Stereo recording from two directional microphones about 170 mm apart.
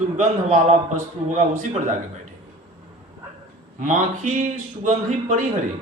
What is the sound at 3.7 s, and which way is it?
A man's voice, 45° right (ahead or behind).